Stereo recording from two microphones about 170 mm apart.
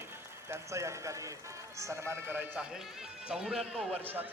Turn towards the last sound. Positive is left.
turn(degrees=-10)  # may be behind; listen again after turning